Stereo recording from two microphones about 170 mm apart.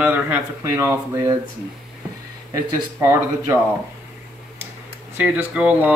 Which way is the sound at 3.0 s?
15° right (ahead or behind).